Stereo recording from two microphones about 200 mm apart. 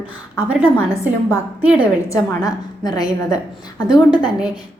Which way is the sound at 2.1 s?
20° left (ahead or behind).